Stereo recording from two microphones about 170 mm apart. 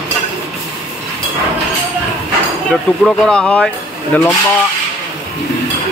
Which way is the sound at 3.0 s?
5° left (ahead or behind).